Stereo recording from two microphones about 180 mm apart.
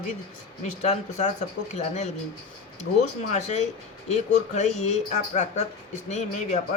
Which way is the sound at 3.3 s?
40° left (ahead or behind).